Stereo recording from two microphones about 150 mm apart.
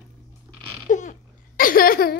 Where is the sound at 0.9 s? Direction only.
55° left (ahead or behind); by 2.2 s 85° left.